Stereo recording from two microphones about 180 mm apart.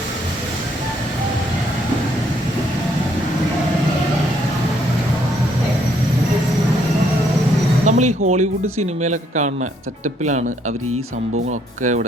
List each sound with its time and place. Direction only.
7.9 s speech: 40° right (ahead or behind)
11.8 s speech: 45° right (ahead or behind)